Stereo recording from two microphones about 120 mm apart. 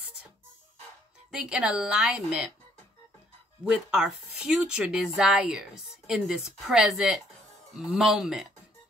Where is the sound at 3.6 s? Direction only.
5° right (ahead or behind).